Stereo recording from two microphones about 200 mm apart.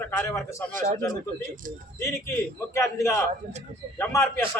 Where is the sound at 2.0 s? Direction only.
15° left (ahead or behind).